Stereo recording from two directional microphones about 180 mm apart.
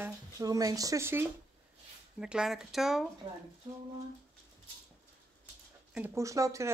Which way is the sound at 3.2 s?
25° right (ahead or behind).